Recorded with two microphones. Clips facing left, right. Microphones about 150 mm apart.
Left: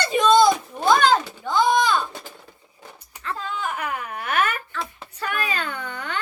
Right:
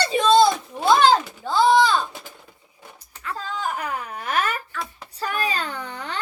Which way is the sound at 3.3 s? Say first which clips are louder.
Right 1 dB; 35° right (ahead or behind).